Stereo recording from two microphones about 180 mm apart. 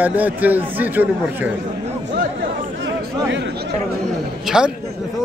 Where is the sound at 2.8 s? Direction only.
90° right.